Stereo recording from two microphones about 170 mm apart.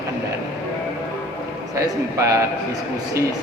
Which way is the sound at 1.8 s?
20° right (ahead or behind).